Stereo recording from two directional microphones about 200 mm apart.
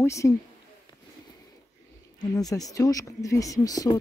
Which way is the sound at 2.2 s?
20° left (ahead or behind).